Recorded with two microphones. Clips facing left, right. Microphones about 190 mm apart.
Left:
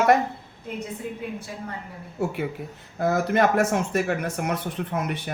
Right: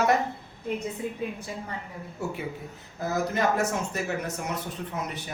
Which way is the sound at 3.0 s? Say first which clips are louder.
Left 5 dB; 60° left (ahead or behind).